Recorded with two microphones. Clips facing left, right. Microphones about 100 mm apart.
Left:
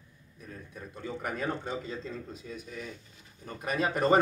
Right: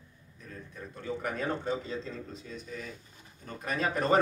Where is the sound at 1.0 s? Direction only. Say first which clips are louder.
Even; 5° left (ahead or behind).